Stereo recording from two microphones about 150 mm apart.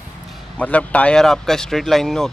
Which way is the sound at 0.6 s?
10° left (ahead or behind).